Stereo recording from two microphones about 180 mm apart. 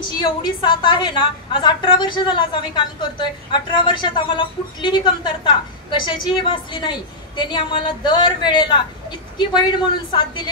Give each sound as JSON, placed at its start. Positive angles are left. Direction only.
{"t": 0.2, "sound": "a woman's voice", "side_deg": 25}